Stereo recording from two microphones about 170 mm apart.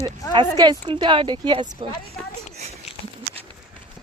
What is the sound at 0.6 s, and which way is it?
Speech, 25° right (ahead or behind).